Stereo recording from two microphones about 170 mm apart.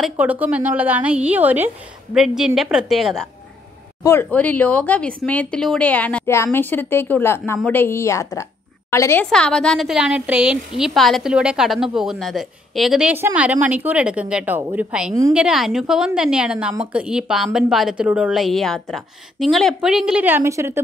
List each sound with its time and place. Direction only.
0.0 s a woman's voice: 10° right (ahead or behind)
4.0 s speech: 15° left (ahead or behind)
9.2 s a woman's voice: 5° left (ahead or behind); by 20.8 s 15° right (ahead or behind)